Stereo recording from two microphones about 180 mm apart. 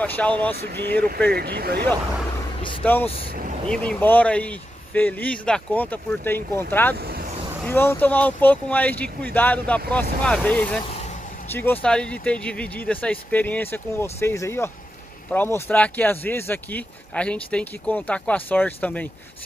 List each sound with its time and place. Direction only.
0.0 s speech: 10° left (ahead or behind)
0.6 s speech: 65° right (ahead or behind)
2.8 s speech: 10° left (ahead or behind)